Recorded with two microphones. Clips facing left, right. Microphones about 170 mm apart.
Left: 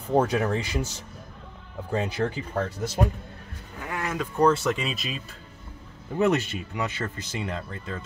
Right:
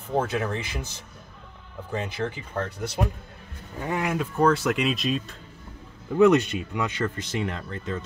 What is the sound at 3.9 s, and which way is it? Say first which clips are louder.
Speech: right 4 dB; 15° right (ahead or behind).